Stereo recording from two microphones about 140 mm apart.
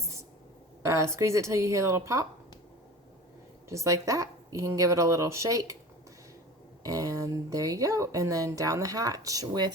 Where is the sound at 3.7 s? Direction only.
20° right (ahead or behind).